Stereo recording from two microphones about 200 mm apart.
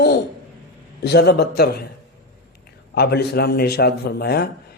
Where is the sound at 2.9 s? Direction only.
50° left (ahead or behind).